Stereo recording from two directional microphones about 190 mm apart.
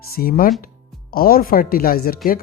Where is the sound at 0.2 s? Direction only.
50° left (ahead or behind).